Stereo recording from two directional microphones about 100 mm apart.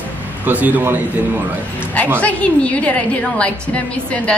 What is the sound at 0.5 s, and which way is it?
Speech, 15° right (ahead or behind).